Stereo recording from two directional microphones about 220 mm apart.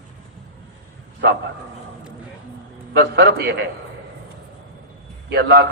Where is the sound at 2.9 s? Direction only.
50° right (ahead or behind).